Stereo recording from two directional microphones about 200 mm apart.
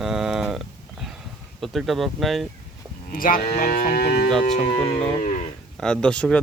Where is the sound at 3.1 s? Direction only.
45° left (ahead or behind).